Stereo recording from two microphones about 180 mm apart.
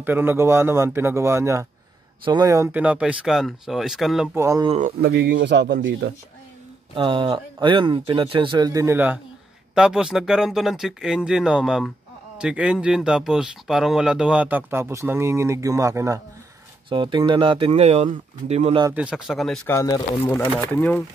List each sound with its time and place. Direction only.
0.0 s speech: 10° right (ahead or behind)
4.4 s speech: 15° right (ahead or behind)
4.6 s speech: 40° right (ahead or behind)
5.0 s speech: 65° right (ahead or behind); by 6.1 s 90° right
7.0 s speech: 25° right (ahead or behind)
16.9 s speech: 25° right (ahead or behind)
18.9 s speech: 5° right (ahead or behind)
19.7 s speech: 20° left (ahead or behind)